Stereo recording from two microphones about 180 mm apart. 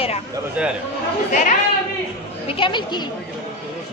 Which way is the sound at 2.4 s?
25° left (ahead or behind).